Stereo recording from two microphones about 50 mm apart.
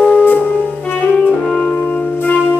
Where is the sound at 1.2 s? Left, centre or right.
Left.